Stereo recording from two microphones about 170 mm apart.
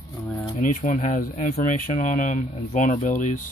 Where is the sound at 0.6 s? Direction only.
50° left (ahead or behind).